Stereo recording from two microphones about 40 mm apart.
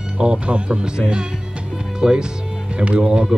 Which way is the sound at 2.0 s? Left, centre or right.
Centre.